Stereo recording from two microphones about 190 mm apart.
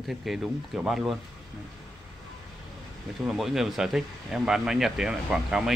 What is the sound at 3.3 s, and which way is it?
Speech, centre (ahead or behind).